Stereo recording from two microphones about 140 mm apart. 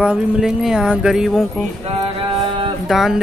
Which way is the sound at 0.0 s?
5° right (ahead or behind).